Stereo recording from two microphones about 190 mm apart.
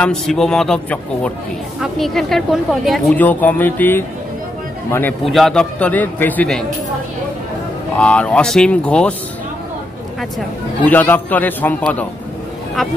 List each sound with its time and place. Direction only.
0.0 s speech: 5° left (ahead or behind)
5.2 s speech: centre (ahead or behind)
8.0 s speech: 5° left (ahead or behind)
10.9 s a man's voice: 10° left (ahead or behind)